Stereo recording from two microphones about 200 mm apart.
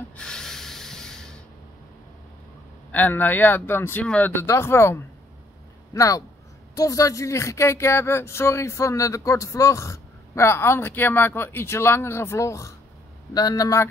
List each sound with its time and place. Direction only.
0.2 s sanding: 5° left (ahead or behind)
2.9 s speech: 10° left (ahead or behind)